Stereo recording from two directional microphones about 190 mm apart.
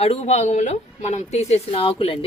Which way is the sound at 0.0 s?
35° left (ahead or behind).